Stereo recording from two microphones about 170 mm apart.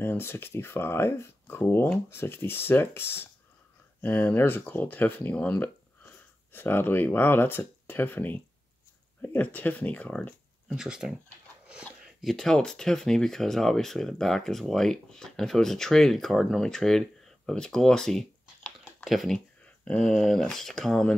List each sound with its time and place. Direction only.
0.0 s speech: 15° left (ahead or behind)
10.7 s speech: 5° right (ahead or behind)